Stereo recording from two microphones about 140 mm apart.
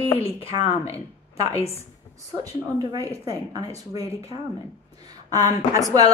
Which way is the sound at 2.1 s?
25° right (ahead or behind).